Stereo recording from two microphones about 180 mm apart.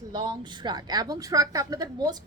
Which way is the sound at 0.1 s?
25° right (ahead or behind).